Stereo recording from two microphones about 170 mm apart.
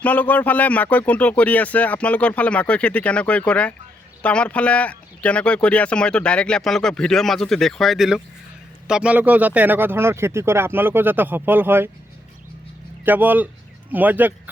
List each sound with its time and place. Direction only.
0.0 s speech: 10° left (ahead or behind); by 11.9 s 10° right (ahead or behind)
13.1 s speech: 10° right (ahead or behind)